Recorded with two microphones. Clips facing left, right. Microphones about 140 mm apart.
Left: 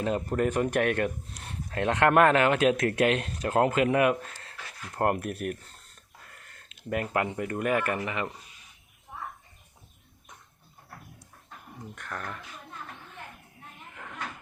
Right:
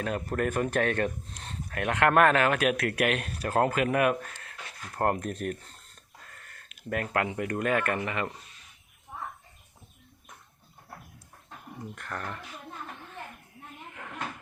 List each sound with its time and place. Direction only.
0.0 s speech: 20° left (ahead or behind)
1.7 s speech: 25° left (ahead or behind); by 5.5 s 10° left (ahead or behind)
6.7 s a sound: 25° left (ahead or behind)
7.0 s speech: 10° left (ahead or behind)
11.9 s speech: centre (ahead or behind)
13.9 s cupboard open or close: centre (ahead or behind)